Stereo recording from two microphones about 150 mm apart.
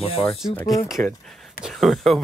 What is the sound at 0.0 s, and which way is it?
Speech, 40° left (ahead or behind).